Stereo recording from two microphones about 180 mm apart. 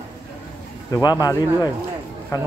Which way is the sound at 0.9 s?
20° left (ahead or behind).